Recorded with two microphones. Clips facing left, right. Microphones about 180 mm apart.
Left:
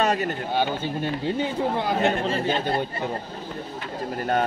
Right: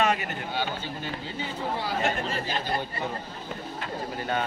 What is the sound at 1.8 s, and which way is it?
Speech, 60° left (ahead or behind).